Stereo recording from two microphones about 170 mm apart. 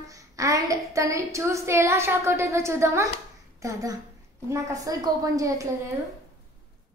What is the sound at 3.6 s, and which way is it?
A woman's voice, 20° right (ahead or behind).